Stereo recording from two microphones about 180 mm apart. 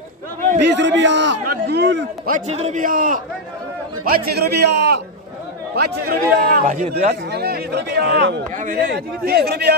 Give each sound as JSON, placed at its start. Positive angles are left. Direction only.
{"t": 0.6, "sound": "a man's voice", "side_deg": -75}
{"t": 2.2, "sound": "a man's voice", "side_deg": -45}
{"t": 5.8, "sound": "a man's voice", "side_deg": -55}
{"t": 7.2, "sound": "speech", "side_deg": -60}
{"t": 8.5, "sound": "a man's voice", "side_deg": -50}